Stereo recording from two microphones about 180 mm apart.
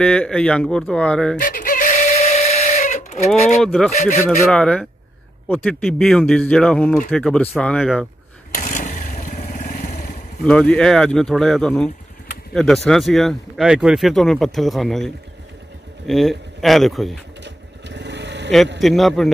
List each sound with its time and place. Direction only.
0.0 s speech: 5° left (ahead or behind)
1.4 s a sound: 50° left (ahead or behind)
3.6 s speech: 5° left (ahead or behind)
3.9 s speech: 40° left (ahead or behind)
4.5 s speech: 5° left (ahead or behind)
8.5 s motorcycle: 45° left (ahead or behind)
10.4 s speech: 5° left (ahead or behind)
17.4 s vehicle: 75° right (ahead or behind)
18.8 s speech: centre (ahead or behind)